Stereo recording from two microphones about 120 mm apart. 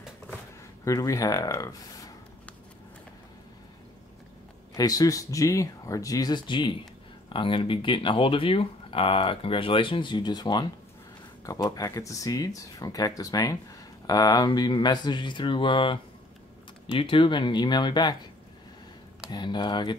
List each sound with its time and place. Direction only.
0.8 s speech: 30° left (ahead or behind)
4.7 s speech: 30° left (ahead or behind)
19.3 s speech: 40° left (ahead or behind)